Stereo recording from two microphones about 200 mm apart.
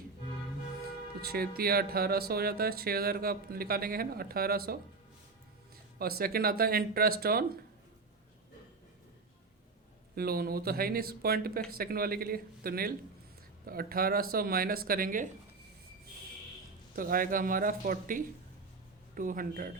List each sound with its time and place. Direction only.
1.2 s speech: 50° right (ahead or behind)
6.0 s speech: 50° right (ahead or behind)
10.2 s speech: 50° right (ahead or behind)
16.9 s speech: 45° right (ahead or behind)